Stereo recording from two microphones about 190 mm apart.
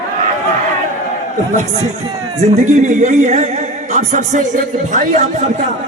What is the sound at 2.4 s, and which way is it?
Speech, 40° right (ahead or behind).